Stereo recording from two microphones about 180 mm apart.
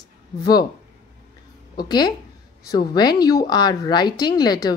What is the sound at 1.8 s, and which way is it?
Speech, 25° left (ahead or behind).